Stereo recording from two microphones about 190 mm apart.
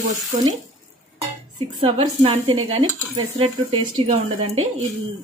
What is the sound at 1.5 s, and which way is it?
A woman's voice, 30° right (ahead or behind).